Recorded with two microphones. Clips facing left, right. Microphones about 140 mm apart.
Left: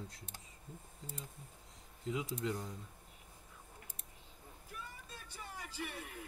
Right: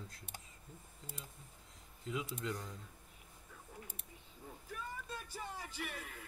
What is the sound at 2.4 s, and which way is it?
Speech, 25° left (ahead or behind).